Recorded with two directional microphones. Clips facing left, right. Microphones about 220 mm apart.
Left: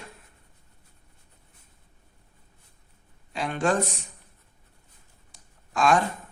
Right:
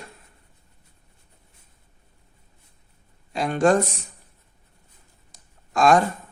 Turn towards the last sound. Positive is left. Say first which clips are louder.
# right 5 dB
turn(degrees=-40)  # may be behind; listen again after turning